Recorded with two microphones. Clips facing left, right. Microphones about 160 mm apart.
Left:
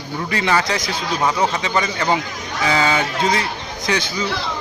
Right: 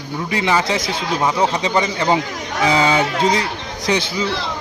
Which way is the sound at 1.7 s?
20° right (ahead or behind).